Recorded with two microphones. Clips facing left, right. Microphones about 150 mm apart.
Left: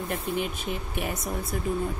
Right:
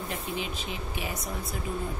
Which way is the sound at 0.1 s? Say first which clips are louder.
Left 6 dB; 55° left (ahead or behind).